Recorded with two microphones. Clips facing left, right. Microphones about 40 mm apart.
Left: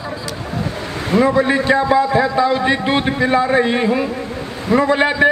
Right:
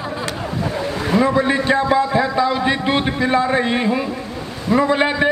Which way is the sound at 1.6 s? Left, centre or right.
Centre.